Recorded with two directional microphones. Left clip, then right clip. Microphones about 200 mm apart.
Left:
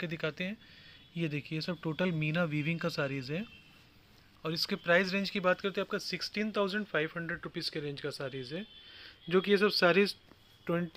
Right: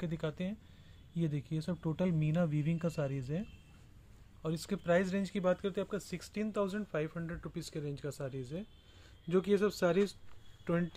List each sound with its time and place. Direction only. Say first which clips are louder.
0.0 s speech: left 4 dB; 5° right (ahead or behind)